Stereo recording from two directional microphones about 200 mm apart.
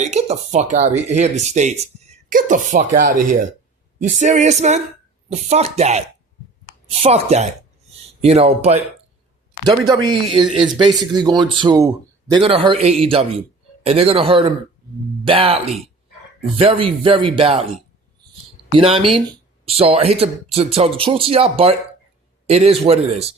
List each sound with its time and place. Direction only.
0.0 s speech: 35° right (ahead or behind)
9.6 s speech: 20° right (ahead or behind)
18.7 s speech: 25° right (ahead or behind)